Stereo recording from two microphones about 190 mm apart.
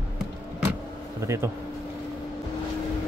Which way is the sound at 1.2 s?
15° right (ahead or behind).